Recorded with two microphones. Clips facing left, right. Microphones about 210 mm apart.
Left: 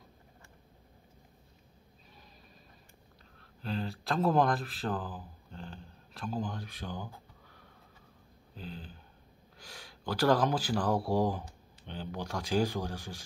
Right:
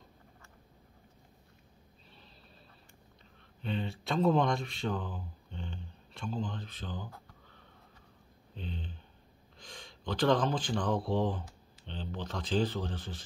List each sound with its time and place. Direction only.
3.6 s speech: centre (ahead or behind)
8.5 s a sound: 5° left (ahead or behind)
9.6 s speech: 10° left (ahead or behind)